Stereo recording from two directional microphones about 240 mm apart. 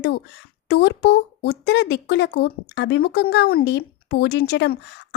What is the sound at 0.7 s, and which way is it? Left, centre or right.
A woman's voice, left.